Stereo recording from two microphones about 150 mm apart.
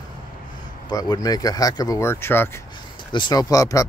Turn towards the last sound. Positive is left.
turn(degrees=20)  # may be behind; listen again after turning